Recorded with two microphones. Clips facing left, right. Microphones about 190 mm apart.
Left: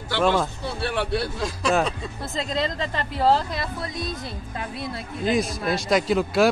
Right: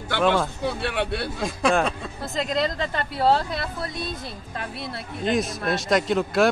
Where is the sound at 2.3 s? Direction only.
Centre (ahead or behind).